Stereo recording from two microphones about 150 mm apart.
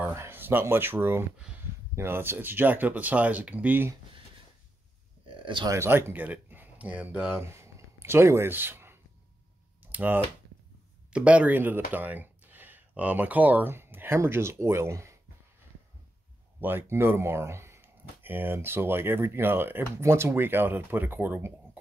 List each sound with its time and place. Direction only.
0.0 s speech: 15° right (ahead or behind)
5.2 s a sound: 35° right (ahead or behind)
5.7 s speech: 15° right (ahead or behind)
16.6 s speech: 15° right (ahead or behind)